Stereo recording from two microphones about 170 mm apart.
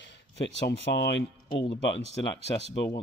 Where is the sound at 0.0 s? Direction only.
90° left.